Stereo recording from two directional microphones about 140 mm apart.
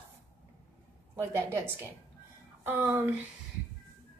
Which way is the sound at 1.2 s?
20° right (ahead or behind).